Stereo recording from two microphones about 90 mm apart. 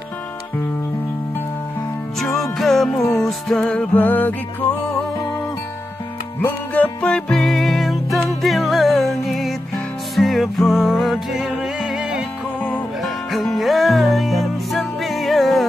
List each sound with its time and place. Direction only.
2.1 s music: 5° left (ahead or behind); by 4.7 s 20° left (ahead or behind)
6.4 s music: 20° left (ahead or behind); by 15.6 s centre (ahead or behind)